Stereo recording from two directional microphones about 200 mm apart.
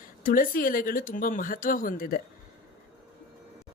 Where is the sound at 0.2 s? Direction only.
45° left (ahead or behind).